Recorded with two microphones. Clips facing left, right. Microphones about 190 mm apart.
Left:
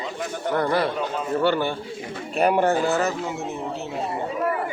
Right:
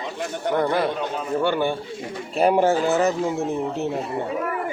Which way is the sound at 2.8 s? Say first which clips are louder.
Right 3 dB; 15° right (ahead or behind).